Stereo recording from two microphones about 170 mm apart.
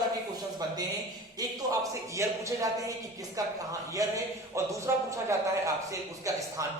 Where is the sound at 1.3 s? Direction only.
20° right (ahead or behind).